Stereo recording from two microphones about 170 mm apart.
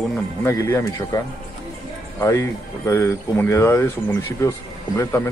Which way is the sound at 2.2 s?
15° left (ahead or behind).